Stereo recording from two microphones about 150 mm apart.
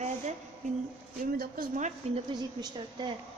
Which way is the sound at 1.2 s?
65° right (ahead or behind).